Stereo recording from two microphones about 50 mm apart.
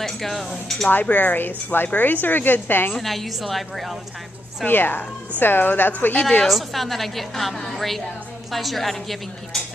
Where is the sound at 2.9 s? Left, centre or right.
Centre.